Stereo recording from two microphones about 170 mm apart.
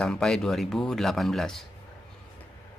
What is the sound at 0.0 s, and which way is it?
Speech, 5° left (ahead or behind).